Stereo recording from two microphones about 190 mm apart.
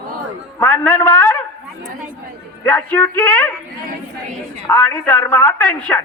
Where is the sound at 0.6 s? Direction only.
10° left (ahead or behind).